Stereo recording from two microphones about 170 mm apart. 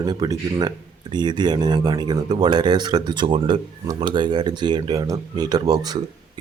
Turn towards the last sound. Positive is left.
turn(degrees=-20)  # may be behind; listen again after turning